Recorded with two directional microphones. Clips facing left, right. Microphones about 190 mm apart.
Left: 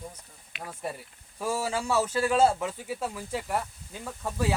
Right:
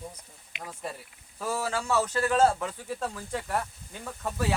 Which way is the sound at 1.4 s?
10° left (ahead or behind).